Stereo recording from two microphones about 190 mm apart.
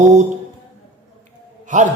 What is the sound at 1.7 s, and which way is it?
Speech, 40° right (ahead or behind).